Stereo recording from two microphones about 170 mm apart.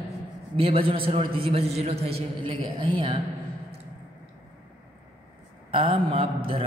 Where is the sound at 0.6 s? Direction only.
30° right (ahead or behind).